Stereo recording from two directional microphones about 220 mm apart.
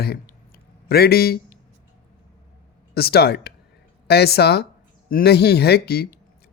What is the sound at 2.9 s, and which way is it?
Speech, 45° left (ahead or behind).